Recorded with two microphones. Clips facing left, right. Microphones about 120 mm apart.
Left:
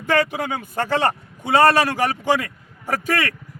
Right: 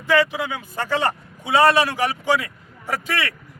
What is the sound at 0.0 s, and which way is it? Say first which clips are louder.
A man's voice: right 1 dB; 50° left (ahead or behind).